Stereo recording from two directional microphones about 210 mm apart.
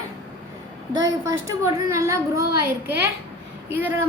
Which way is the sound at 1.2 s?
15° right (ahead or behind).